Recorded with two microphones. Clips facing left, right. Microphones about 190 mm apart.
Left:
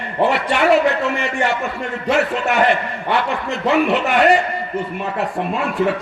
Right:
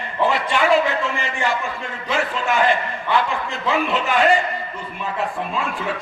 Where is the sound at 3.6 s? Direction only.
70° left (ahead or behind).